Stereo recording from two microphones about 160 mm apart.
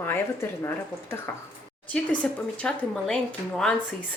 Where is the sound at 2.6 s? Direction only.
5° left (ahead or behind).